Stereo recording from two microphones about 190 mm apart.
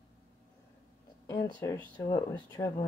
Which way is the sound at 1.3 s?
20° left (ahead or behind).